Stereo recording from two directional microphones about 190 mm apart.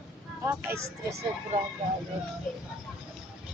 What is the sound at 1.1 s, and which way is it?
Speech, 35° right (ahead or behind).